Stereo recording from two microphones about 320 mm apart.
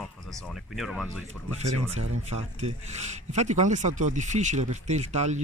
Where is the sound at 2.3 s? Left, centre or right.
Right.